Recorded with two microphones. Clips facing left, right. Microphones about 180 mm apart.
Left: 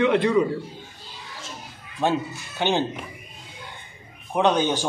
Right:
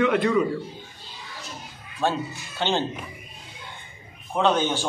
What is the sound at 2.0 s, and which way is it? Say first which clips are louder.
Speech: left 2 dB; 15° left (ahead or behind).